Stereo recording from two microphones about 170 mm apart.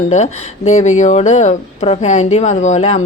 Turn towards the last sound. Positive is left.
turn(degrees=40)  # may be behind; listen again after turning